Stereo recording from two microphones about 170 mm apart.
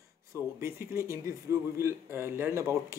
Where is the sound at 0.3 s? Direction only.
15° right (ahead or behind).